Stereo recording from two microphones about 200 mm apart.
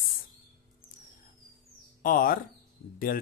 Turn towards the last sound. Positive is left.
turn(degrees=45)  # may be behind; listen again after turning